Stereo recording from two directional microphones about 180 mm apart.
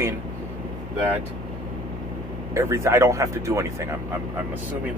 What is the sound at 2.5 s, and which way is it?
Speech, 15° right (ahead or behind).